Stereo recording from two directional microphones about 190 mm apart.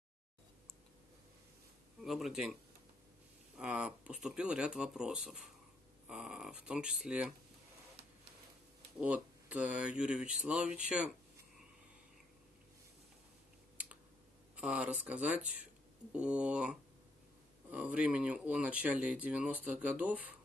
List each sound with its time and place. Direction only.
2.0 s speech: centre (ahead or behind)
9.0 s speech: 5° right (ahead or behind)
14.5 s speech: 5° right (ahead or behind)